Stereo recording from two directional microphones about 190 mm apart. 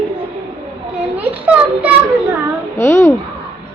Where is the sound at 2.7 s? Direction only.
15° left (ahead or behind).